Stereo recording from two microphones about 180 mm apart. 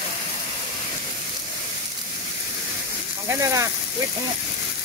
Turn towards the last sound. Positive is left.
turn(degrees=-15)  # may be behind; listen again after turning